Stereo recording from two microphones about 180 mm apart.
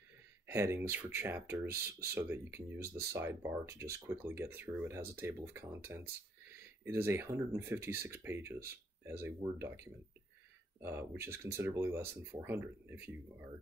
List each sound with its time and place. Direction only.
0.5 s speech: 15° right (ahead or behind)